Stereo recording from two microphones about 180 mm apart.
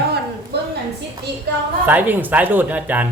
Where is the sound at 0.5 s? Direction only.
65° right (ahead or behind).